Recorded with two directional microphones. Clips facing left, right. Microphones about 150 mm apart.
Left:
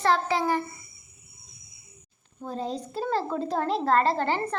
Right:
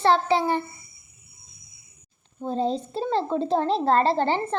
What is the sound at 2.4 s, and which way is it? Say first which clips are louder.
A woman's voice: right 6 dB; 25° right (ahead or behind).